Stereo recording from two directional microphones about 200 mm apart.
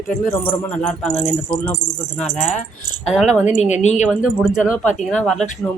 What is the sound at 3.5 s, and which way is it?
Speech, 35° left (ahead or behind).